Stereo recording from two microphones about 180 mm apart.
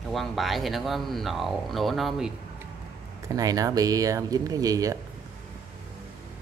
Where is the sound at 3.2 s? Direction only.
20° right (ahead or behind).